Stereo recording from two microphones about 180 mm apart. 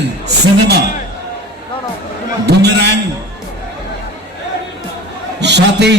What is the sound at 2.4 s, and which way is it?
Speech, 70° right (ahead or behind).